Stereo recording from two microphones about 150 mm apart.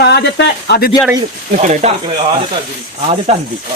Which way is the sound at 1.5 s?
55° right (ahead or behind).